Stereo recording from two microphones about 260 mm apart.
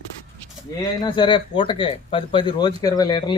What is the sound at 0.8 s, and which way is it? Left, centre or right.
Speech, centre.